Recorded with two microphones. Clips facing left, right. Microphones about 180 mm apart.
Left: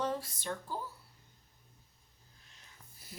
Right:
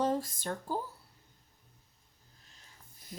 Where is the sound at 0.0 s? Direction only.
40° right (ahead or behind).